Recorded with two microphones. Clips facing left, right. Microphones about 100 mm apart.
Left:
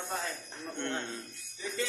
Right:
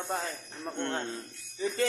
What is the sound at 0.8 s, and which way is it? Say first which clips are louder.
Speech: right 3 dB; 35° right (ahead or behind).